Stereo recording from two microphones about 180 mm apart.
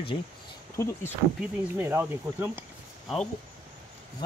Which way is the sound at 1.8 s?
10° right (ahead or behind).